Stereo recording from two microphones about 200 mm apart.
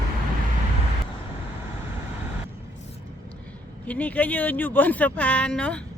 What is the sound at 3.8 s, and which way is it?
Speech, 5° left (ahead or behind).